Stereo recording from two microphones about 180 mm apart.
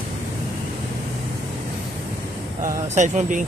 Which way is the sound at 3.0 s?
45° right (ahead or behind).